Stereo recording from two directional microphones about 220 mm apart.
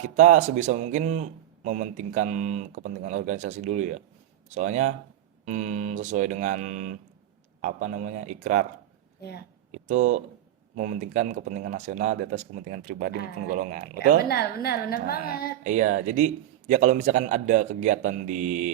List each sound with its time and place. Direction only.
0.0 s a man's voice: 35° right (ahead or behind)
9.7 s a man's voice: 35° right (ahead or behind)
14.2 s a woman's voice: 45° left (ahead or behind)
15.6 s a man's voice: 35° right (ahead or behind)